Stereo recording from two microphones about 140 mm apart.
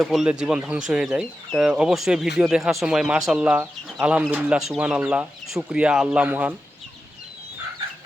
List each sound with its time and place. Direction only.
0.0 s speech: centre (ahead or behind)